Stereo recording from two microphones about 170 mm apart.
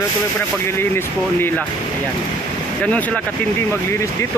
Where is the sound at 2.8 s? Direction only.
10° left (ahead or behind).